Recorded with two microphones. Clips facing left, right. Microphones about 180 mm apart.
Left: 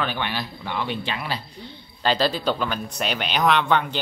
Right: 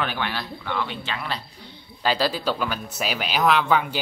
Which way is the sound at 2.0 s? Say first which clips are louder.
Left 1 dB; 5° right (ahead or behind).